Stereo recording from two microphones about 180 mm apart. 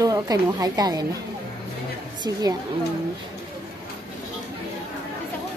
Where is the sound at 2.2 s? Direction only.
20° right (ahead or behind).